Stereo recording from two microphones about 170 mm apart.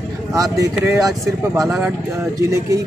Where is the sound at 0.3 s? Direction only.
20° right (ahead or behind).